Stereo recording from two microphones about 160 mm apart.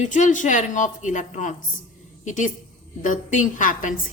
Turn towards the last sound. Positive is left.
turn(degrees=55)  # may be behind; listen again after turning